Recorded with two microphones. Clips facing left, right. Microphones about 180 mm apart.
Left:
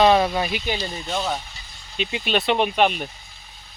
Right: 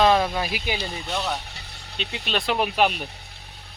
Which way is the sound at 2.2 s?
Centre (ahead or behind).